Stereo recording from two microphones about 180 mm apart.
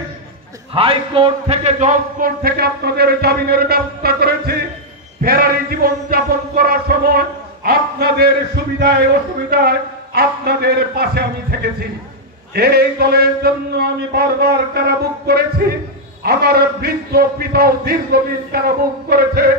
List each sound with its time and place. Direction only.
0.7 s speech: 30° right (ahead or behind); by 19.5 s 60° right (ahead or behind)